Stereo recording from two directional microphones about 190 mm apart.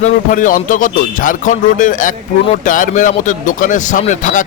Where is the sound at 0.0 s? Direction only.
45° left (ahead or behind).